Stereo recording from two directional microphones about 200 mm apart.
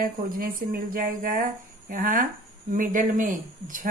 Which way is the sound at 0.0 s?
45° right (ahead or behind).